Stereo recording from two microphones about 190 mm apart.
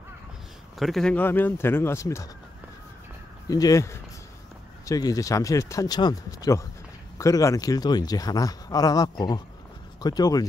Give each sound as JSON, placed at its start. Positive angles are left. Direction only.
{"t": 0.7, "sound": "speech", "side_deg": 0}
{"t": 3.4, "sound": "speech", "side_deg": 20}